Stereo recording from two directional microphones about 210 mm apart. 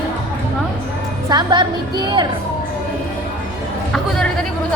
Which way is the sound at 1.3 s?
20° right (ahead or behind).